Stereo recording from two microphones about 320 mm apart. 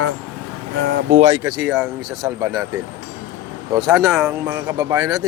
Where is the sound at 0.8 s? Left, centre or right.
Right.